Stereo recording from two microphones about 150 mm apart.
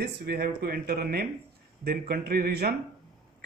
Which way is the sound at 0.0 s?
90° right.